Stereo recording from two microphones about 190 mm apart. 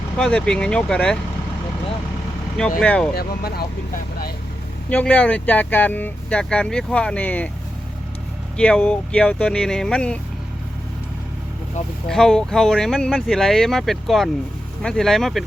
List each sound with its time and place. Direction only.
0.2 s speech: 5° left (ahead or behind)
2.8 s speech: 5° left (ahead or behind)
3.2 s speech: 55° left (ahead or behind)
4.9 s speech: 5° left (ahead or behind)
8.5 s speech: 5° left (ahead or behind)
12.0 s speech: 5° left (ahead or behind)